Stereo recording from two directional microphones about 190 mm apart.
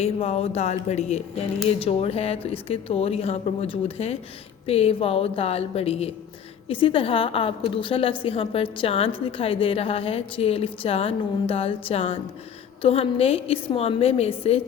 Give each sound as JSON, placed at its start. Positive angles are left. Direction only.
{"t": 0.0, "sound": "a woman's voice", "side_deg": 35}